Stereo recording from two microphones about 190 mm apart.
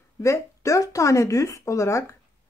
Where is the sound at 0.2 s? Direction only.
15° left (ahead or behind).